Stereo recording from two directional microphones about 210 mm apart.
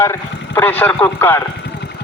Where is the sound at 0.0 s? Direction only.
10° left (ahead or behind).